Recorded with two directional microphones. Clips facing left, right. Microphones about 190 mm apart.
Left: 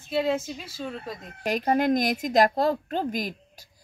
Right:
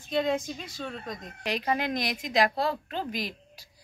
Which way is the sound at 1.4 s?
45° left (ahead or behind).